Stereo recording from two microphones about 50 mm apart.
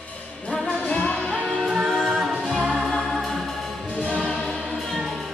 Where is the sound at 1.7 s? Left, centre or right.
Centre.